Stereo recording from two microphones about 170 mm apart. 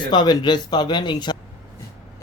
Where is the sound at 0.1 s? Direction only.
25° left (ahead or behind).